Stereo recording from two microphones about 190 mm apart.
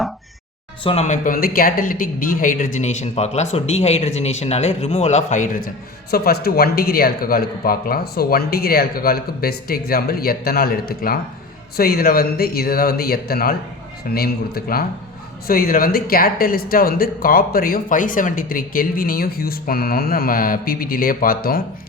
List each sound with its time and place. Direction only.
0.9 s speech: 35° left (ahead or behind)